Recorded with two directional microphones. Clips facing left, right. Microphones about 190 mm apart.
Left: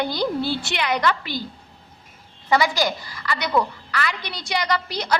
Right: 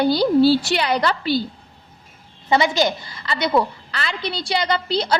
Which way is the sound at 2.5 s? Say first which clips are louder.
Right 2 dB; 25° right (ahead or behind).